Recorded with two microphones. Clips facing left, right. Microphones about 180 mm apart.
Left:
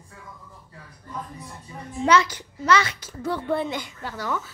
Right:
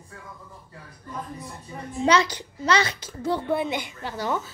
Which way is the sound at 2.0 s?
30° right (ahead or behind).